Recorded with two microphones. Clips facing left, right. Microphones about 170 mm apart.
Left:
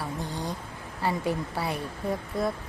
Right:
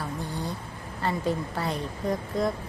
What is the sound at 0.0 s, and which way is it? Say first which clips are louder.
Vehicle: even; 15° left (ahead or behind).